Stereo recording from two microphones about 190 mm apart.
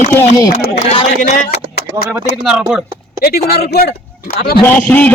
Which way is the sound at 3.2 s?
55° left (ahead or behind).